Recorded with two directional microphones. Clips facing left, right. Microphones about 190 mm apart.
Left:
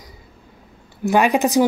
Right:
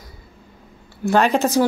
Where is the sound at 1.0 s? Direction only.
15° left (ahead or behind).